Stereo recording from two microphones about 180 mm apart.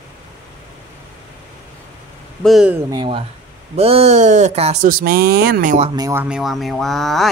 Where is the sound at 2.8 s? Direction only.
25° right (ahead or behind); by 5.7 s 60° right (ahead or behind).